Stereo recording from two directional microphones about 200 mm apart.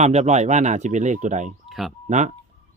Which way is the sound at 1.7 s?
Centre (ahead or behind).